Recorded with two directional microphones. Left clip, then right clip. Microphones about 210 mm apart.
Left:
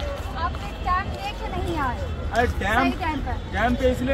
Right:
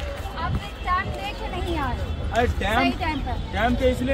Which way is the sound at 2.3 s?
Centre (ahead or behind).